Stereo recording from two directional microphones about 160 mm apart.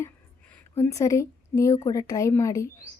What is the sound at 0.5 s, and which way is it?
A woman's voice, 15° left (ahead or behind).